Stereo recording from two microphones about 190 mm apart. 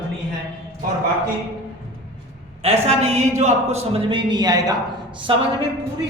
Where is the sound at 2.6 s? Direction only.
35° right (ahead or behind).